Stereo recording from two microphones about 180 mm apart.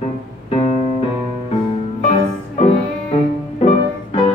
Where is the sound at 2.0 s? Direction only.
35° left (ahead or behind).